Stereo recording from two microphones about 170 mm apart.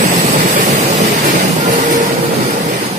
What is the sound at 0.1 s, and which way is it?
Train, 45° right (ahead or behind).